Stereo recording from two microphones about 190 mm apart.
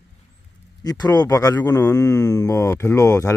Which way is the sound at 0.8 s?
20° left (ahead or behind).